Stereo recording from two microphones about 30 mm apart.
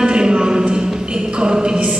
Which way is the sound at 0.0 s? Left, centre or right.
Right.